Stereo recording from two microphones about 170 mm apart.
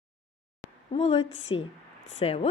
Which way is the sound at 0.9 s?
35° left (ahead or behind).